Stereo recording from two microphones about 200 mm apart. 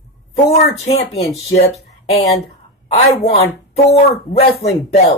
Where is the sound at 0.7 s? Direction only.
30° left (ahead or behind).